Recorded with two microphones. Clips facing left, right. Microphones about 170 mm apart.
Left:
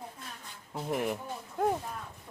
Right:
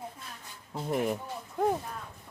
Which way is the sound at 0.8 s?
Centre (ahead or behind).